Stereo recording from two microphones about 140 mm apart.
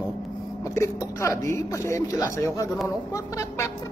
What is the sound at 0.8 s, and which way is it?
A man's voice, 20° left (ahead or behind).